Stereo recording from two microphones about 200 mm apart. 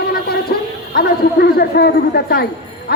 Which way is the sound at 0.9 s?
50° left (ahead or behind).